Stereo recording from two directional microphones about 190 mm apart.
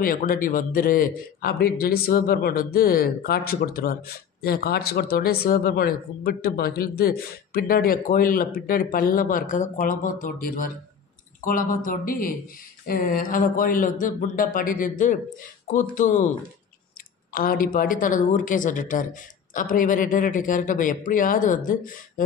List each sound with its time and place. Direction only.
0.0 s speech: 50° left (ahead or behind)
17.3 s speech: 50° left (ahead or behind)